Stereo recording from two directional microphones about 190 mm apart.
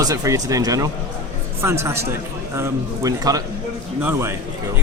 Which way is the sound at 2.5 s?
15° right (ahead or behind).